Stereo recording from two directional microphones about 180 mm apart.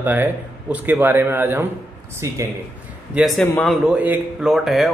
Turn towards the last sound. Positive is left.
turn(degrees=0)  # may be behind; listen again after turning